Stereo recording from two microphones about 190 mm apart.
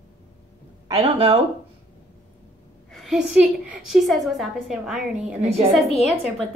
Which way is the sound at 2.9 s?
Centre (ahead or behind).